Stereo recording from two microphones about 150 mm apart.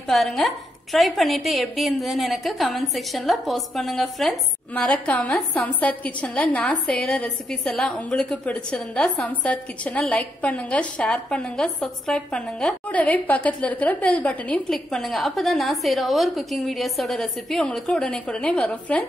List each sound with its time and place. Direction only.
0.1 s a woman's voice: centre (ahead or behind)